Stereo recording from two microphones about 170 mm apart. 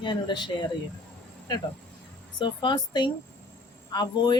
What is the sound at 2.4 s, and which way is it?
Speech, 25° left (ahead or behind).